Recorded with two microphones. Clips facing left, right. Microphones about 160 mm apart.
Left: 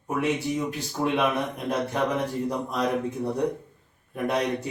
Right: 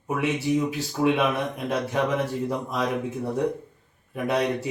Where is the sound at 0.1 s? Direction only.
Centre (ahead or behind).